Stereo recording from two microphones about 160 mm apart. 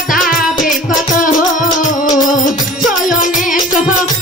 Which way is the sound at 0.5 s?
55° left (ahead or behind).